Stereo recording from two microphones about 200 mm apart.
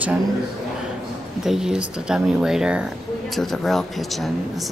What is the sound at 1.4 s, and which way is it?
Speech, 5° right (ahead or behind).